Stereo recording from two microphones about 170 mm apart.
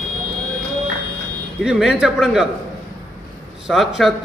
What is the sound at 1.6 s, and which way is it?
Speech, 5° right (ahead or behind).